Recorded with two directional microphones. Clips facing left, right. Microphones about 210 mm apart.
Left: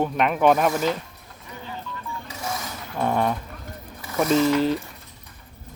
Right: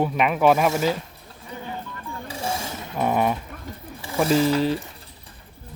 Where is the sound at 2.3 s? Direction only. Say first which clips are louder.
Right 4 dB; 30° right (ahead or behind).